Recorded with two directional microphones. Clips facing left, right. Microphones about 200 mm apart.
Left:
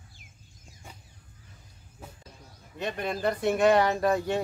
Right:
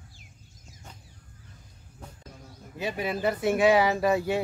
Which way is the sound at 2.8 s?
5° right (ahead or behind).